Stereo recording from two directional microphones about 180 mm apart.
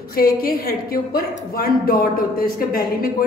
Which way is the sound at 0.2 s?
55° left (ahead or behind).